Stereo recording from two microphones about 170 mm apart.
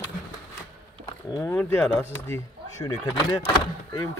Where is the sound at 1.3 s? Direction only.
15° left (ahead or behind).